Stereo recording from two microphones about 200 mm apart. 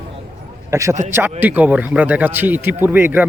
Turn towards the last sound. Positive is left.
turn(degrees=-10)  # may be behind; listen again after turning